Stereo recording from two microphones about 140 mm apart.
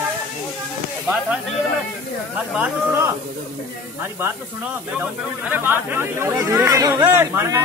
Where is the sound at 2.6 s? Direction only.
20° right (ahead or behind).